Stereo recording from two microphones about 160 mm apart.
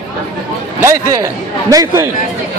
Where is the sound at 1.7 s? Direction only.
20° right (ahead or behind).